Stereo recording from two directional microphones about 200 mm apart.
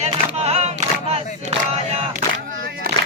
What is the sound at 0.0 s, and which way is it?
Choir, 30° right (ahead or behind).